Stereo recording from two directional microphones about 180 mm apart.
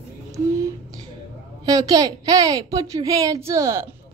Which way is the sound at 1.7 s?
20° right (ahead or behind).